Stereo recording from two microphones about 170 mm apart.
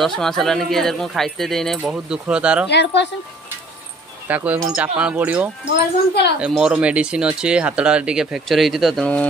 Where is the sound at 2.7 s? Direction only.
80° left.